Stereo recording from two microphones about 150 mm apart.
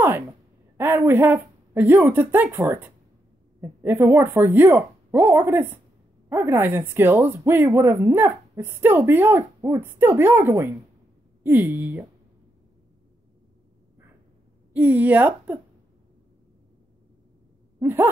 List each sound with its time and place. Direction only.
0.7 s speech: 15° right (ahead or behind)
14.7 s speech: 10° right (ahead or behind)
17.7 s gasp: 15° right (ahead or behind)